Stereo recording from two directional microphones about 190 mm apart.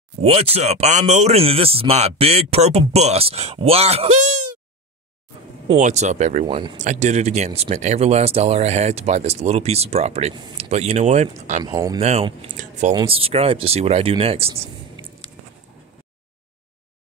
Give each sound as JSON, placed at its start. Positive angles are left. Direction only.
{"t": 0.2, "sound": "a man's voice", "side_deg": -30}
{"t": 5.8, "sound": "a man's voice", "side_deg": -40}
{"t": 6.4, "sound": "speech", "side_deg": -25}
{"t": 6.8, "sound": "a man's voice", "side_deg": -40}
{"t": 11.6, "sound": "speech", "side_deg": -20}
{"t": 12.0, "sound": "a man's voice", "side_deg": -35}